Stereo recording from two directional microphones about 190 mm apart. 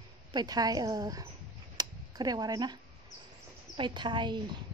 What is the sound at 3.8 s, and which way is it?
Speech, 25° right (ahead or behind).